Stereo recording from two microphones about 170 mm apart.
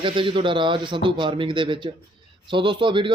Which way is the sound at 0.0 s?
30° right (ahead or behind).